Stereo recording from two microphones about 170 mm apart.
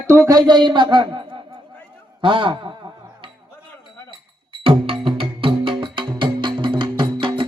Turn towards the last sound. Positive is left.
turn(degrees=-30)  # may be behind; listen again after turning